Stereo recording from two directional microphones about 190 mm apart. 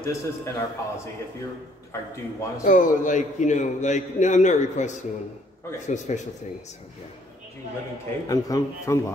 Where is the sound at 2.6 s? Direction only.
45° left (ahead or behind).